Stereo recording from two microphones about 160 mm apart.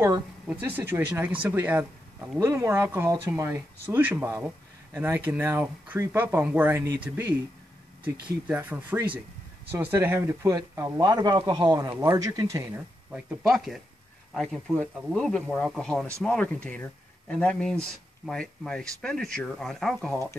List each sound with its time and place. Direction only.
0.5 s speech: 10° right (ahead or behind)
8.5 s speech: 10° right (ahead or behind)
13.1 s speech: centre (ahead or behind)